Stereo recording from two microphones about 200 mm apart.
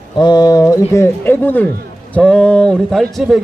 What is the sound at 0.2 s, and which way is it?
A man's voice, 20° left (ahead or behind).